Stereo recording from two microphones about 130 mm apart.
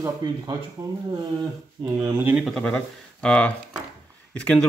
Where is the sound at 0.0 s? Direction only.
30° right (ahead or behind).